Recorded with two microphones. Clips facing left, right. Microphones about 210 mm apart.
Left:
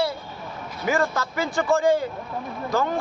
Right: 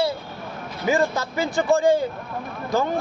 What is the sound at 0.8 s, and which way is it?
Speech, 20° right (ahead or behind).